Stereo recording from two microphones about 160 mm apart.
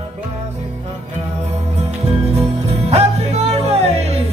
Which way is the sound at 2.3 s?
40° right (ahead or behind).